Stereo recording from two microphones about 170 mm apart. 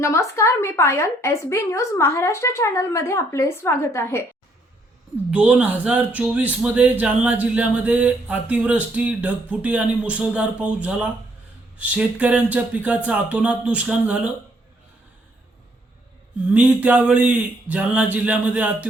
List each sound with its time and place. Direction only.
0.0 s a woman's voice: 15° left (ahead or behind)
5.3 s speech: 10° right (ahead or behind)
16.5 s speech: 5° right (ahead or behind)